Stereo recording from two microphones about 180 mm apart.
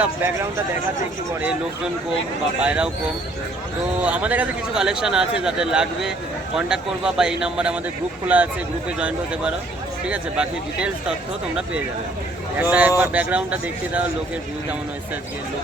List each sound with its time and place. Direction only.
0.0 s speech: 10° right (ahead or behind)
2.6 s speech: 5° right (ahead or behind)
4.0 s a man's voice: 10° right (ahead or behind)
12.5 s speech: 10° right (ahead or behind)